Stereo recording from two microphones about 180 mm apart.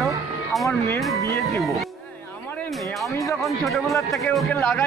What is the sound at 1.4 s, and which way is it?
Speech, centre (ahead or behind).